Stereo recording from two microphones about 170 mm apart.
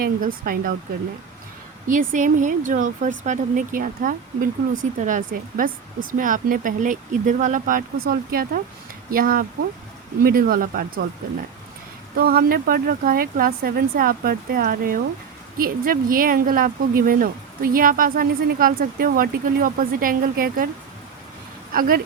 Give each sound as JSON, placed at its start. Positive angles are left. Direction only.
{"t": 0.0, "sound": "speech", "side_deg": -60}
{"t": 1.9, "sound": "speech", "side_deg": -50}
{"t": 12.1, "sound": "speech", "side_deg": -60}
{"t": 21.7, "sound": "speech", "side_deg": -55}